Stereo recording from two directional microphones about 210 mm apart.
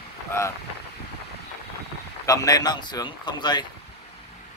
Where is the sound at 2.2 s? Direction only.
15° left (ahead or behind).